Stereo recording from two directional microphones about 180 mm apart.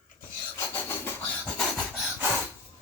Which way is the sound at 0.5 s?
10° left (ahead or behind).